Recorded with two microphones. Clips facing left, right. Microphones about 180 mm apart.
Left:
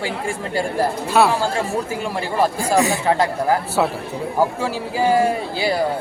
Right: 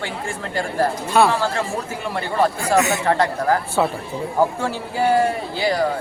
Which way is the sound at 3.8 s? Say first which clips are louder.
Even; centre (ahead or behind).